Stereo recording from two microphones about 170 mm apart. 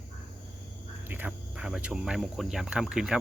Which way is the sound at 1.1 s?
10° right (ahead or behind).